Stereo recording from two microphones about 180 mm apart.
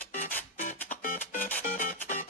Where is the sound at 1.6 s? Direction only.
50° left (ahead or behind).